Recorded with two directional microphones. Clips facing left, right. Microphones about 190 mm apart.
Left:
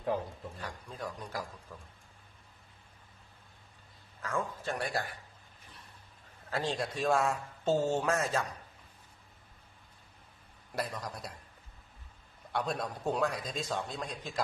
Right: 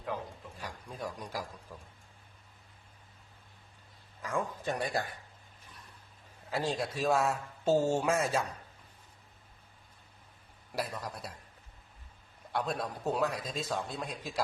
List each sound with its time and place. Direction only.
0.6 s speech: 15° right (ahead or behind)
4.2 s speech: 15° right (ahead or behind)
6.5 s speech: 10° right (ahead or behind)
10.7 s a man's voice: 5° right (ahead or behind)
12.5 s a man's voice: centre (ahead or behind)